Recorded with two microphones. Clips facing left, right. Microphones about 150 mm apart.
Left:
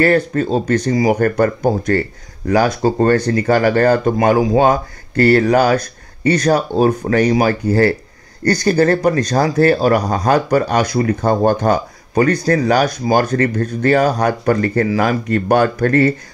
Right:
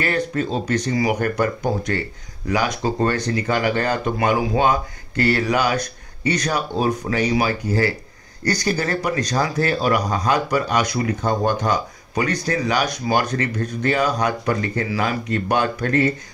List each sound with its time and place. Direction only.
0.0 s speech: 45° left (ahead or behind)
0.9 s speech: 35° left (ahead or behind); by 16.1 s 50° left (ahead or behind)